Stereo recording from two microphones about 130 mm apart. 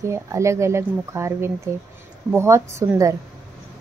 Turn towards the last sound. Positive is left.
turn(degrees=-25)  # may be behind; listen again after turning